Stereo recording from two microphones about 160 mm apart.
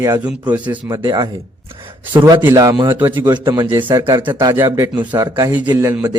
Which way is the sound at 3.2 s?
30° right (ahead or behind).